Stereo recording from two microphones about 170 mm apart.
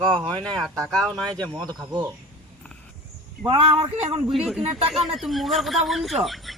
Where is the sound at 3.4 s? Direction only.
35° right (ahead or behind).